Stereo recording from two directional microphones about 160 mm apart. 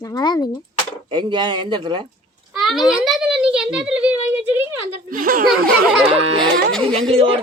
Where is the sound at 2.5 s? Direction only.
Centre (ahead or behind).